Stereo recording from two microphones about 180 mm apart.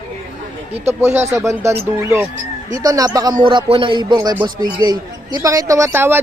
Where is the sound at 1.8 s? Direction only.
15° right (ahead or behind).